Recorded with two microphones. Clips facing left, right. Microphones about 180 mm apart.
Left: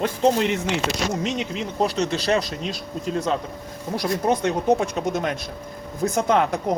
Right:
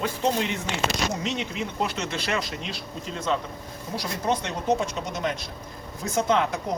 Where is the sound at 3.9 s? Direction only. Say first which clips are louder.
Left 5 dB; 50° left (ahead or behind).